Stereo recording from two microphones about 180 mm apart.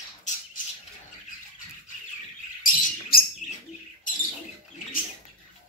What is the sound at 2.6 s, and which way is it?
Bird, 55° left (ahead or behind).